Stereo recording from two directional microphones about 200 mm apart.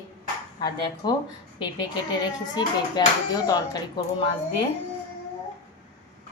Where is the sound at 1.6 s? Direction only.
20° left (ahead or behind).